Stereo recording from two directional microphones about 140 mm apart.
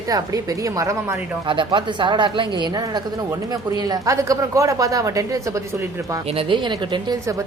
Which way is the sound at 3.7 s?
25° right (ahead or behind).